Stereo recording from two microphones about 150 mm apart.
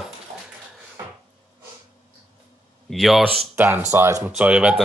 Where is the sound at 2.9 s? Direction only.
Centre (ahead or behind).